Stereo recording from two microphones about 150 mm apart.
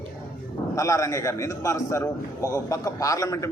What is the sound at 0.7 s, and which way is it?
A man's voice, 20° left (ahead or behind).